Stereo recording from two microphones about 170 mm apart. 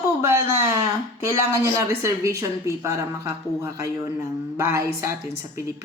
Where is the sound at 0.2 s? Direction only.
15° right (ahead or behind).